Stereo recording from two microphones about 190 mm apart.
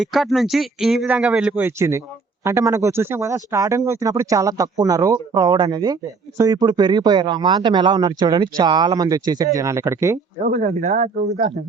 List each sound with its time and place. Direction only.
0.0 s speech: centre (ahead or behind); by 10.2 s 15° right (ahead or behind)
10.4 s speech: 45° right (ahead or behind)